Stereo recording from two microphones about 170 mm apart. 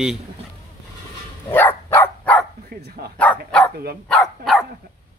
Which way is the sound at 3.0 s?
65° right (ahead or behind).